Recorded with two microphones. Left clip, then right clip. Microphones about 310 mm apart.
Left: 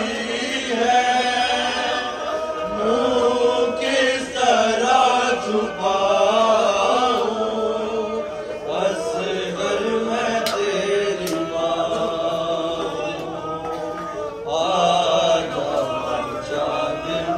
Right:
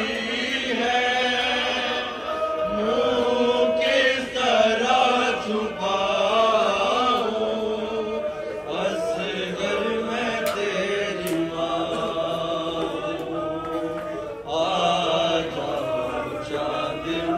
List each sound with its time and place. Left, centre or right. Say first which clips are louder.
0.7 s chant: left 6 dB; left
9.7 s chant: left 4 dB; left
14.5 s mantra: left 4 dB; left